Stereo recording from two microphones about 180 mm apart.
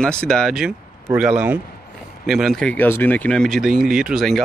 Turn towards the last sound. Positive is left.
turn(degrees=0)  # may be behind; listen again after turning